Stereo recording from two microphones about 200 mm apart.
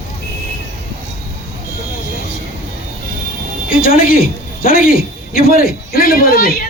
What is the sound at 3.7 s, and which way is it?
A man's voice, 45° left (ahead or behind).